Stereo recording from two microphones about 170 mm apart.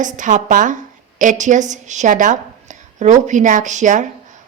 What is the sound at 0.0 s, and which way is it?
A woman's voice, 45° right (ahead or behind).